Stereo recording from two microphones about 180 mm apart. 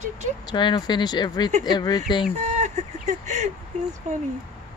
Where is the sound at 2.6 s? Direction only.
40° right (ahead or behind).